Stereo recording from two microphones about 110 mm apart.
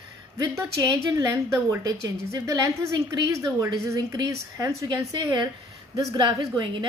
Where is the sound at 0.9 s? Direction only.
30° right (ahead or behind).